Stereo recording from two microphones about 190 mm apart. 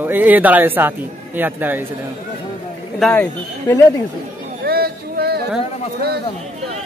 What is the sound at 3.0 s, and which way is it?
Speech, 10° left (ahead or behind).